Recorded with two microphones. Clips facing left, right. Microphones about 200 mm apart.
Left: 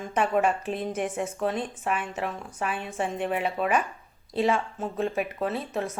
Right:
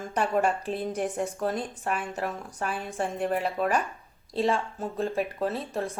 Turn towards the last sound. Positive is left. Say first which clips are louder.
# left 1 dB
turn(degrees=0)  # may be behind; listen again after turning